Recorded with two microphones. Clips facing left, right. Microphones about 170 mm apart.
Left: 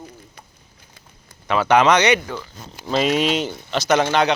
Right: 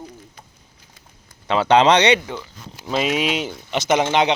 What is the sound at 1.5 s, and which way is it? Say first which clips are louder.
Speech: right 1 dB; 30° right (ahead or behind).